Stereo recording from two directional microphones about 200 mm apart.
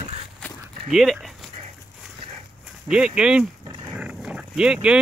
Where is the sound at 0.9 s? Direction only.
Centre (ahead or behind).